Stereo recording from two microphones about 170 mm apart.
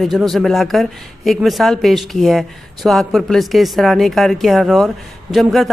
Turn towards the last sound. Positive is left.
turn(degrees=0)  # may be behind; listen again after turning